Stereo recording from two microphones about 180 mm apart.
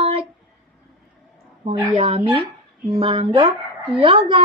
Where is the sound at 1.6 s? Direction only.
30° right (ahead or behind).